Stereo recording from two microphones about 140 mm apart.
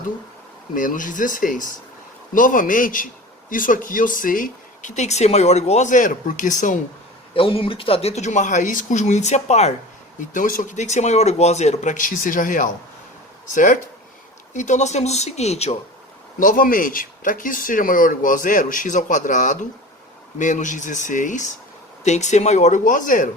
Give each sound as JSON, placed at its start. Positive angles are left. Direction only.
{"t": 0.7, "sound": "speech", "side_deg": 75}
{"t": 7.3, "sound": "speech", "side_deg": 40}
{"t": 10.2, "sound": "speech", "side_deg": 70}
{"t": 16.4, "sound": "speech", "side_deg": 75}